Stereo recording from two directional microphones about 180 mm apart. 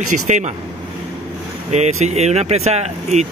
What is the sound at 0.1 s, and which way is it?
Speech, 40° right (ahead or behind).